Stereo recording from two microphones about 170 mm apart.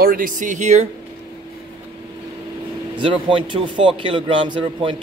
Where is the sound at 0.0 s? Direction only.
55° right (ahead or behind).